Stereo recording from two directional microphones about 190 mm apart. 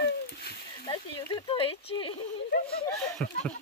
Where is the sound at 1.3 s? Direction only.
25° left (ahead or behind).